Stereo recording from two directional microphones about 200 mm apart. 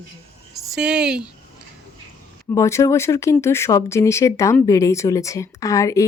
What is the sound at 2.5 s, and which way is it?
Speech, 15° left (ahead or behind).